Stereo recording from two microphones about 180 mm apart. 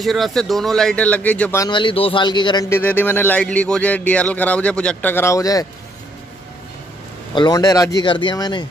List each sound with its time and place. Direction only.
0.0 s speech: centre (ahead or behind)
1.6 s speech: 25° left (ahead or behind)
2.8 s speech: 10° left (ahead or behind)
7.3 s speech: 20° left (ahead or behind)